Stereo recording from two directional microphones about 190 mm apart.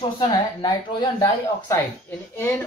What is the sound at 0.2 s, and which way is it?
Speech, 20° left (ahead or behind).